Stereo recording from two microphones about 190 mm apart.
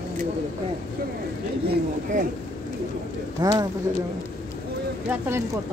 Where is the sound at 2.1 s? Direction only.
45° right (ahead or behind).